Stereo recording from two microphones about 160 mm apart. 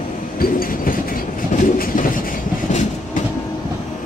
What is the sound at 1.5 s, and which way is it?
Train, 55° left (ahead or behind).